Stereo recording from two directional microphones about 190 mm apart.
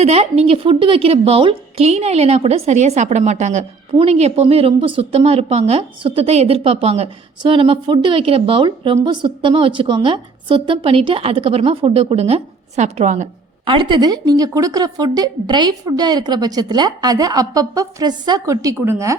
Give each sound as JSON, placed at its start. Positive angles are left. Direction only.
{"t": 0.0, "sound": "a woman's voice", "side_deg": -35}
{"t": 13.7, "sound": "speech", "side_deg": -25}